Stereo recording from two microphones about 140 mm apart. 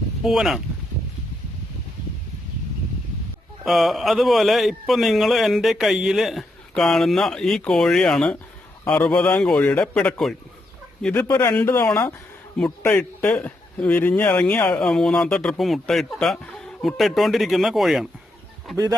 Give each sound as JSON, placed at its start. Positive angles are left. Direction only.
{"t": 0.3, "sound": "a man's voice", "side_deg": 0}
{"t": 3.6, "sound": "a man's voice", "side_deg": 0}
{"t": 11.3, "sound": "a man's voice", "side_deg": 20}